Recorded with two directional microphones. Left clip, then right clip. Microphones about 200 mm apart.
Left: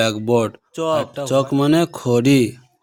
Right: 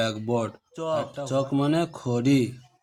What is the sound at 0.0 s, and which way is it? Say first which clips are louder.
Speech: left 9 dB; 40° left (ahead or behind).